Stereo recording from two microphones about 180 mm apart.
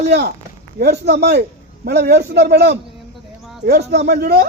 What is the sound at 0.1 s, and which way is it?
A man's voice, 65° right (ahead or behind).